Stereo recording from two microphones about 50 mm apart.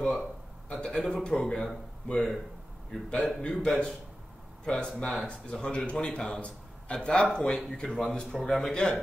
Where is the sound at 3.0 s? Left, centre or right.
Left.